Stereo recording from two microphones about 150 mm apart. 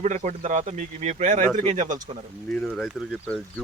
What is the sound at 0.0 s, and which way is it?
Speech, 55° right (ahead or behind).